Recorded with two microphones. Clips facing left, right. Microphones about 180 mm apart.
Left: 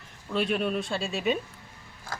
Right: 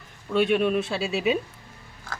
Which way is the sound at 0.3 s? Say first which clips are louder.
Right 6 dB; 5° right (ahead or behind).